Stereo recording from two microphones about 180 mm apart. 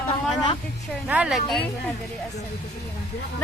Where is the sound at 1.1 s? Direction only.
5° right (ahead or behind).